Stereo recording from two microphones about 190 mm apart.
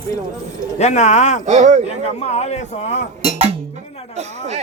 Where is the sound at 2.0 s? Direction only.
35° left (ahead or behind).